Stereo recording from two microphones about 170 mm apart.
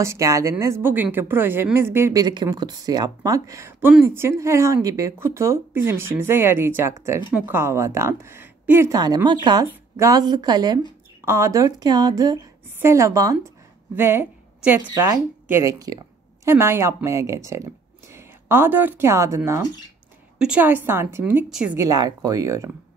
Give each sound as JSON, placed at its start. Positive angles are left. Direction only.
{"t": 0.0, "sound": "a woman's voice", "side_deg": -15}
{"t": 20.3, "sound": "a woman's voice", "side_deg": -5}
{"t": 21.7, "sound": "a woman's voice", "side_deg": -20}